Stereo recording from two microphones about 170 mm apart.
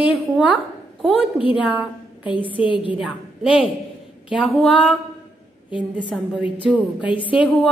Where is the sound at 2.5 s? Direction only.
30° left (ahead or behind).